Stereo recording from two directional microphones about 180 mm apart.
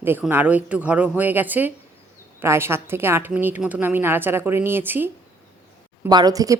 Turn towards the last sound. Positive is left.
turn(degrees=-20)  # may be behind; listen again after turning